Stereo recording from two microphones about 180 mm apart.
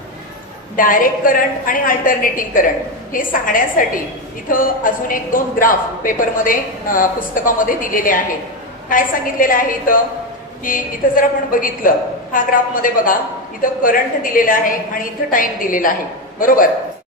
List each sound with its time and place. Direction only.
0.7 s a woman's voice: 50° left (ahead or behind)